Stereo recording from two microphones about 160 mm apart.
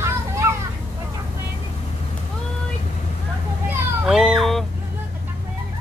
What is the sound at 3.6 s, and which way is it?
Children playing, 5° right (ahead or behind).